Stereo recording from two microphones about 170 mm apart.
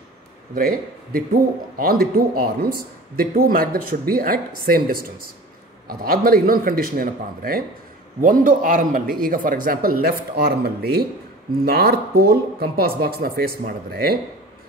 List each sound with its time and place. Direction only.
0.6 s a man's voice: 60° right (ahead or behind)